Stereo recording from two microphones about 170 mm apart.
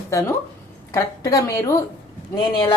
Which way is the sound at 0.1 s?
20° left (ahead or behind).